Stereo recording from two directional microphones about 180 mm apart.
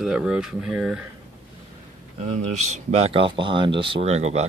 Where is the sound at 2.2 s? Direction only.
40° right (ahead or behind).